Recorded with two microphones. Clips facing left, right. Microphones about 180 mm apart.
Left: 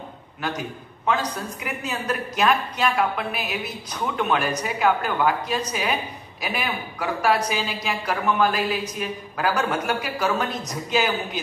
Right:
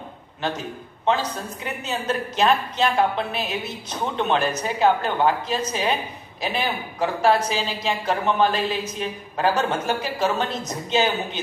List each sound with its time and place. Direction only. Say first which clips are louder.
0.4 s a man's voice: right 1 dB; 25° right (ahead or behind)